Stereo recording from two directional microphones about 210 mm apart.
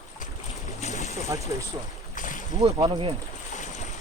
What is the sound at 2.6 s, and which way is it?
Speech, 30° right (ahead or behind).